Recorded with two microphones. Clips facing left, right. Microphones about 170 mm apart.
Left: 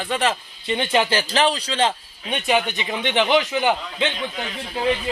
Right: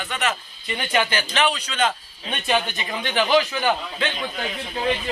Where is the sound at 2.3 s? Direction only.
15° left (ahead or behind).